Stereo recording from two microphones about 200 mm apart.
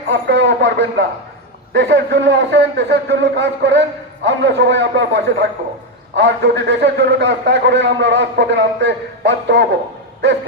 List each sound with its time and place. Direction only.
0.1 s a man's voice: 65° right (ahead or behind)